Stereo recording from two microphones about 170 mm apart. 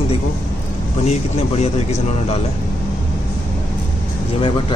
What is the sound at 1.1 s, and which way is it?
Speech, 40° left (ahead or behind).